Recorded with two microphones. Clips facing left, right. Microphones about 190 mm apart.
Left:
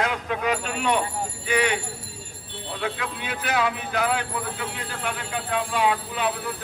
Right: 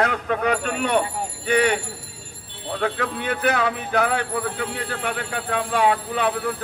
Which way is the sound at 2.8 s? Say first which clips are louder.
Right 5 dB; 50° right (ahead or behind).